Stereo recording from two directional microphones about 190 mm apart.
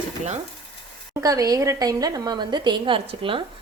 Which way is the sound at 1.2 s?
20° right (ahead or behind).